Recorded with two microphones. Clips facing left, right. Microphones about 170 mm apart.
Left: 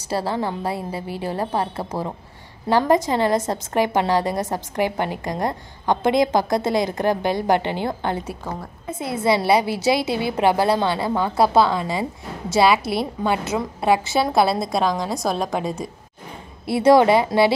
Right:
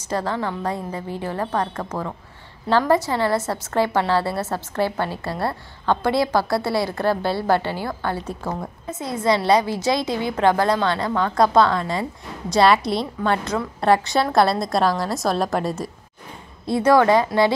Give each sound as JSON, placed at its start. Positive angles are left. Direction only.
{"t": 0.1, "sound": "a woman's voice", "side_deg": 10}
{"t": 8.9, "sound": "a woman's voice", "side_deg": 10}
{"t": 16.7, "sound": "a woman's voice", "side_deg": 15}